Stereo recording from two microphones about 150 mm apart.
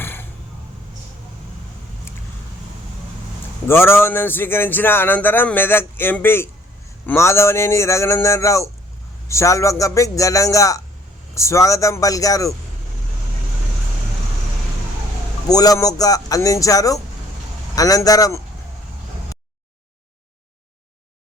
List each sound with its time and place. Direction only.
0.0 s a sound: 15° left (ahead or behind)
3.7 s a man's voice: 15° left (ahead or behind)
15.4 s a man's voice: 25° left (ahead or behind)